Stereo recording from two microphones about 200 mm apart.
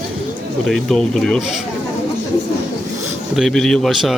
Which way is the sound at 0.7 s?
Centre (ahead or behind).